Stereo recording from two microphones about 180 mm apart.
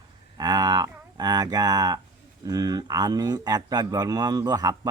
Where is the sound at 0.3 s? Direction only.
20° right (ahead or behind).